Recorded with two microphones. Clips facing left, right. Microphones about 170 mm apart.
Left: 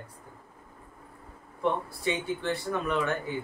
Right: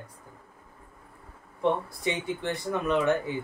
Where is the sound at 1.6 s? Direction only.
15° right (ahead or behind).